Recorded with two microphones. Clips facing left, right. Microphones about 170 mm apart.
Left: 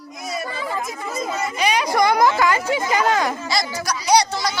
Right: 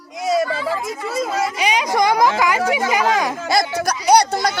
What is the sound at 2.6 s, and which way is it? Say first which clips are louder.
Speech: right 3 dB; 90° right.